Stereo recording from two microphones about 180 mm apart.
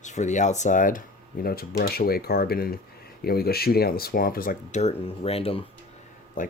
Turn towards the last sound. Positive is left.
turn(degrees=45)  # may be behind; listen again after turning